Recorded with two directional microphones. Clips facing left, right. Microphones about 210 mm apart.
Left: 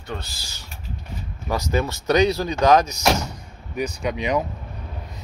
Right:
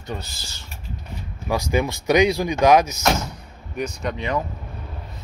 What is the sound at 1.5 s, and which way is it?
Speech, 15° right (ahead or behind).